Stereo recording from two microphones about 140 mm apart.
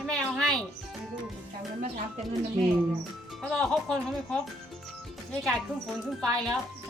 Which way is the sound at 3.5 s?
5° left (ahead or behind).